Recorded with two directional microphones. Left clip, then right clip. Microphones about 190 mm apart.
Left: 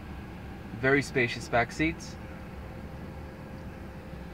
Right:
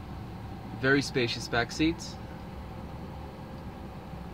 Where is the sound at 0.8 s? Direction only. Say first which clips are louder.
Left 1 dB; 10° left (ahead or behind).